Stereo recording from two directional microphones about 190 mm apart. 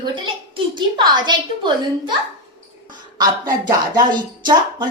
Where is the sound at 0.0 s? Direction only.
25° right (ahead or behind).